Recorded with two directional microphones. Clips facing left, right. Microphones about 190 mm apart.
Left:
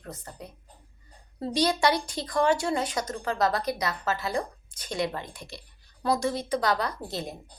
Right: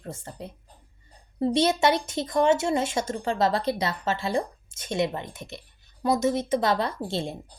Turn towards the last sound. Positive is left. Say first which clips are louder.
# right 4 dB
turn(degrees=-25)  # may be behind; listen again after turning